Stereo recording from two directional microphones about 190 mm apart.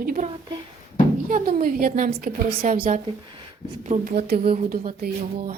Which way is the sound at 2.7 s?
45° right (ahead or behind).